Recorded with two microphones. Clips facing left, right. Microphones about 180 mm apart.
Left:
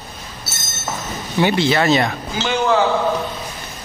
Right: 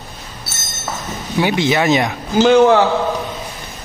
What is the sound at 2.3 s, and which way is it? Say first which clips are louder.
Speech: right 10 dB; 55° right (ahead or behind).